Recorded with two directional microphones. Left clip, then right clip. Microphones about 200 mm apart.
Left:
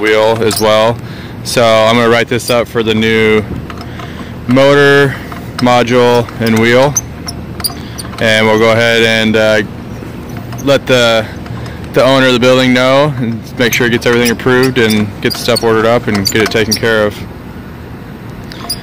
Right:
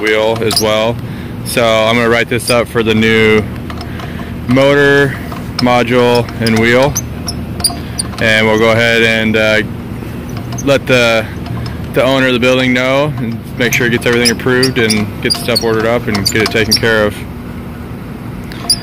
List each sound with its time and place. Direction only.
0.0 s speech: 30° left (ahead or behind); by 3.4 s 10° left (ahead or behind)
4.6 s speech: 25° left (ahead or behind)
8.2 s speech: 20° left (ahead or behind)